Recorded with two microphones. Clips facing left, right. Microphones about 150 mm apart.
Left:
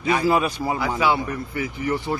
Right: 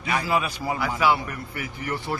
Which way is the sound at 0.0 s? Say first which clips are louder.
Left 5 dB; 25° left (ahead or behind).